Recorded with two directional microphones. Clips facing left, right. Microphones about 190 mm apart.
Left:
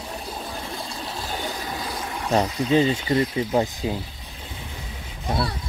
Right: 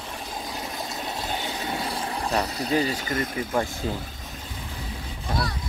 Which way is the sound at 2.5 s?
35° right (ahead or behind).